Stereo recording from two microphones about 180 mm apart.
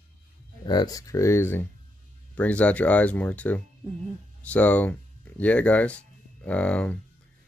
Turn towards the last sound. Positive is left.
turn(degrees=5)  # may be behind; listen again after turning